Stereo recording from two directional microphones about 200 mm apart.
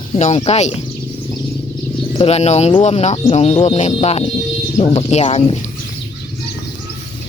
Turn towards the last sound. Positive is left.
turn(degrees=30)  # may be behind; listen again after turning